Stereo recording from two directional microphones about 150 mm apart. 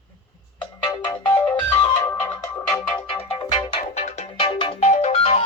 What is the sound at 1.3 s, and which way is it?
Music, 10° left (ahead or behind).